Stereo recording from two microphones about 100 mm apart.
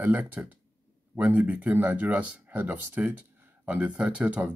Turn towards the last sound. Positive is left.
turn(degrees=-15)  # may be behind; listen again after turning